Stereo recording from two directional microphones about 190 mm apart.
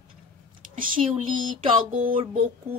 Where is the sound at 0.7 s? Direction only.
45° right (ahead or behind).